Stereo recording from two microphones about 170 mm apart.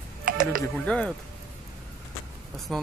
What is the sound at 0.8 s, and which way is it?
Speech, 5° left (ahead or behind).